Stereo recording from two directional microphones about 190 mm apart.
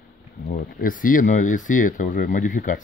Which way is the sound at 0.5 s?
50° left (ahead or behind).